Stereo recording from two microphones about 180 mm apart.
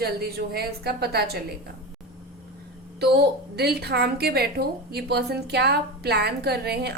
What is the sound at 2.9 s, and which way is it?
A woman's voice, 65° right (ahead or behind).